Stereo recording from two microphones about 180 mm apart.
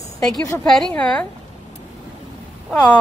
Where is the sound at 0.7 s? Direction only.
Centre (ahead or behind).